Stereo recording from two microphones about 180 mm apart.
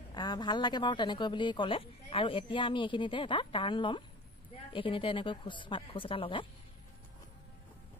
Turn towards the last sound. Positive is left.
turn(degrees=30)  # may be behind; listen again after turning